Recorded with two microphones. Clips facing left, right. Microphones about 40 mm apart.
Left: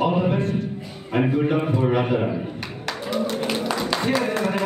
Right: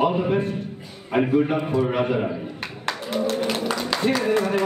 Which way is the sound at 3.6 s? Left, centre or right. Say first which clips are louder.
Left 1 dB; centre.